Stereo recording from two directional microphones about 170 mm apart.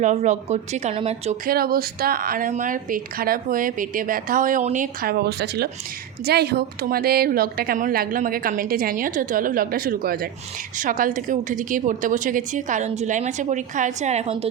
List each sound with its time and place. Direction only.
0.0 s speech: 45° right (ahead or behind)
1.5 s a woman's voice: 60° right (ahead or behind); by 14.4 s 40° right (ahead or behind)